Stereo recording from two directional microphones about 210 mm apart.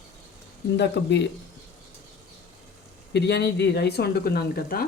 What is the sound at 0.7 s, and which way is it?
Speech, 55° left (ahead or behind).